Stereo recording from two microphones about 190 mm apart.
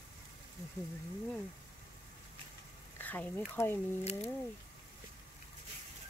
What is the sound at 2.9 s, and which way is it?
Speech, 10° left (ahead or behind).